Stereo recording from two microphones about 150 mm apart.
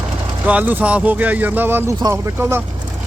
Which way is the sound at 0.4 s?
10° right (ahead or behind).